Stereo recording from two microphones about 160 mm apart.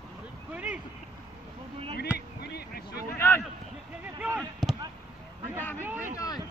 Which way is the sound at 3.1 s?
15° left (ahead or behind).